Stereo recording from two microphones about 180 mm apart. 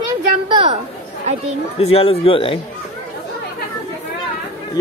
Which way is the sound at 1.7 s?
35° left (ahead or behind).